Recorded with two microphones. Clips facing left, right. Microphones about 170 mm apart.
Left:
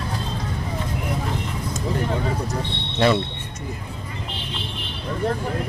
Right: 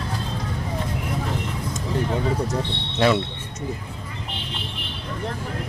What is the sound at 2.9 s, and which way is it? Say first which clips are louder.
Speech: even; centre (ahead or behind).